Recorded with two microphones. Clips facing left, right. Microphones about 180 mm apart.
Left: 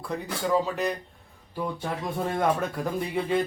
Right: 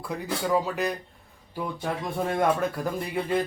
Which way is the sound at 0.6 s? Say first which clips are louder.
Even; 5° right (ahead or behind).